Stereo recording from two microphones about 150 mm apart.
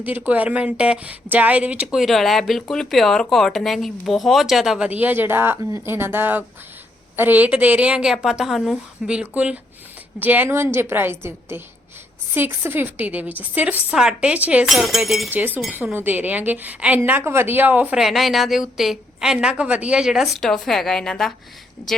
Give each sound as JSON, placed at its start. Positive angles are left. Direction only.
{"t": 0.0, "sound": "a woman's voice", "side_deg": -10}
{"t": 15.3, "sound": "a woman's voice", "side_deg": -10}